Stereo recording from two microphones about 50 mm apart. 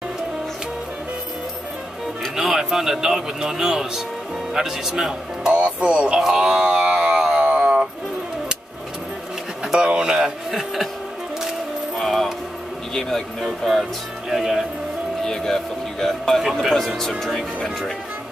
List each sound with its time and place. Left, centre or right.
2.3 s speech: centre
5.5 s speech: right
6.1 s speech: centre
6.4 s a sound: centre
9.7 s speech: centre
12.0 s music: centre
13.4 s speech: centre
15.2 s speech: centre